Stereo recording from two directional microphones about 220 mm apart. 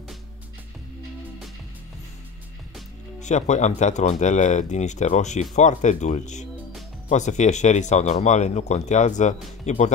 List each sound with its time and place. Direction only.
3.2 s speech: 30° left (ahead or behind)